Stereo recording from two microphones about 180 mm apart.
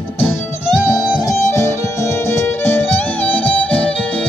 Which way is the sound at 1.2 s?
15° left (ahead or behind).